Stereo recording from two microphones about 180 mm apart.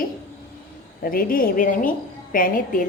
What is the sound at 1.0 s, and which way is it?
A woman's voice, 50° left (ahead or behind).